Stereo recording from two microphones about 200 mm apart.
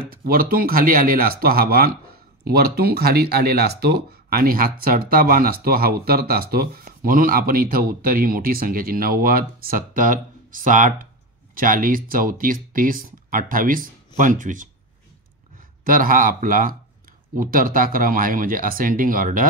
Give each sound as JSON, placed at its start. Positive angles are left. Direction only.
{"t": 0.1, "sound": "speech", "side_deg": -45}
{"t": 15.8, "sound": "speech", "side_deg": -45}